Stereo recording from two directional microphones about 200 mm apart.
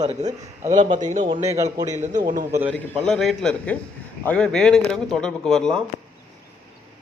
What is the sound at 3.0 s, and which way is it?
A man's voice, centre (ahead or behind).